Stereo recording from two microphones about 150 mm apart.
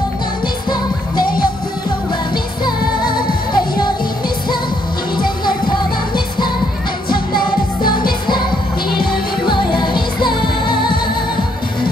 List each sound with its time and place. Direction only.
0.7 s music: 30° left (ahead or behind)
3.2 s music: 30° left (ahead or behind)
5.1 s music: 30° left (ahead or behind)
7.1 s music of asia: 30° left (ahead or behind)
9.5 s music: 30° left (ahead or behind)